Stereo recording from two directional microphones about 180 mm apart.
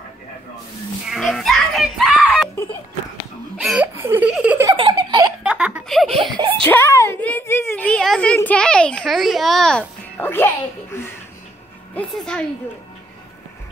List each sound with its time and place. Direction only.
1.0 s screaming: centre (ahead or behind)
3.6 s laughter: 10° right (ahead or behind)
4.6 s giggle: 25° right (ahead or behind)
5.4 s giggle: 5° right (ahead or behind)
6.3 s a sound: 30° right (ahead or behind)
6.6 s a sound: 10° left (ahead or behind)
7.0 s children playing: 10° left (ahead or behind)
11.9 s a woman's voice: 5° left (ahead or behind)